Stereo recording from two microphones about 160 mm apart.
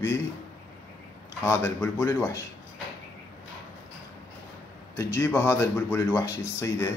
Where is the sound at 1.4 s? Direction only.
15° left (ahead or behind).